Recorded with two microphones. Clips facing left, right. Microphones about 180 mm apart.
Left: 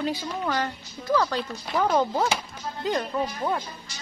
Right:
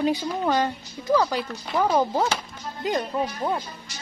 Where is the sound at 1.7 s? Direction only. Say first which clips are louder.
Right 1 dB; centre (ahead or behind).